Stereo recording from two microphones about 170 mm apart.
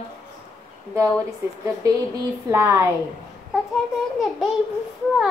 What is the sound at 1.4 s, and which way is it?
A woman's voice, 15° right (ahead or behind).